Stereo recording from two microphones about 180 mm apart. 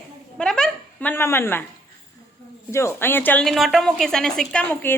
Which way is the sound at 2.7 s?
15° left (ahead or behind).